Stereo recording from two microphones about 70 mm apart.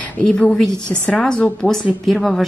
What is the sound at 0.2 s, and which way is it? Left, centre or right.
A woman's voice, centre.